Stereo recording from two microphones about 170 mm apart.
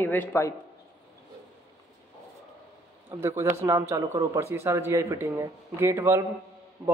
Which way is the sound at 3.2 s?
15° right (ahead or behind).